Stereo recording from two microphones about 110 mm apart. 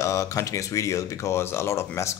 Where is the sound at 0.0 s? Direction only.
30° left (ahead or behind).